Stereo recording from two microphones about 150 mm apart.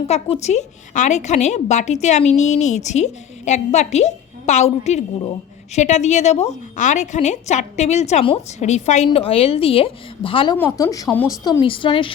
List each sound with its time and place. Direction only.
0.1 s a woman's voice: 45° left (ahead or behind)
9.0 s a woman's voice: 40° left (ahead or behind)
10.8 s speech: 25° left (ahead or behind)
11.6 s a woman's voice: 35° left (ahead or behind)